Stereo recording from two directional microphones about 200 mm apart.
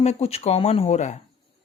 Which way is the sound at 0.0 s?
30° left (ahead or behind).